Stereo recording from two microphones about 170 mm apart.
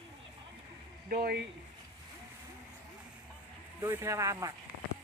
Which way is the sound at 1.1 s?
65° right (ahead or behind).